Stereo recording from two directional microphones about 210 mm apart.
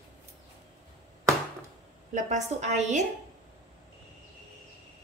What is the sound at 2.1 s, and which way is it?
Speech, 35° right (ahead or behind).